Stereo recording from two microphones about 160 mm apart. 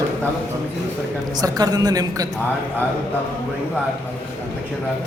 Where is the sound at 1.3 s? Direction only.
25° right (ahead or behind).